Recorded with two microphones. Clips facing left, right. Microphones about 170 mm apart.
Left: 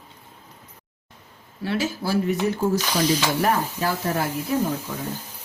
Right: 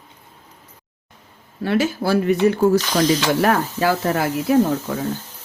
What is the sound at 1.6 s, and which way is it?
Speech, 60° right (ahead or behind).